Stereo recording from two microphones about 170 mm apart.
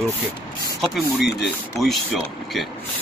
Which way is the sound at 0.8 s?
Centre (ahead or behind).